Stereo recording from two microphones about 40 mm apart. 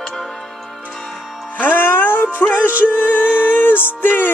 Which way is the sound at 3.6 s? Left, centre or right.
Left.